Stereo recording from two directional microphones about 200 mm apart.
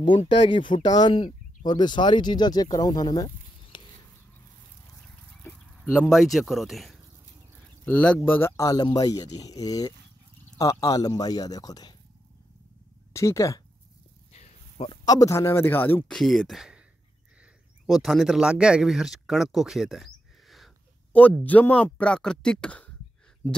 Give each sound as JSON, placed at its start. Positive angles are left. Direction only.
{"t": 0.0, "sound": "speech", "side_deg": 25}
{"t": 3.7, "sound": "a sound", "side_deg": 25}
{"t": 5.4, "sound": "chicken", "side_deg": 10}
{"t": 5.9, "sound": "speech", "side_deg": 0}
{"t": 13.1, "sound": "speech", "side_deg": 15}
{"t": 14.3, "sound": "snake", "side_deg": 30}
{"t": 15.0, "sound": "speech", "side_deg": 15}
{"t": 17.8, "sound": "speech", "side_deg": 0}